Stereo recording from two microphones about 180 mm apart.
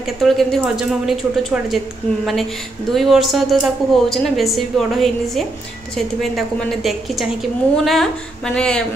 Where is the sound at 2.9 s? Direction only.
Centre (ahead or behind).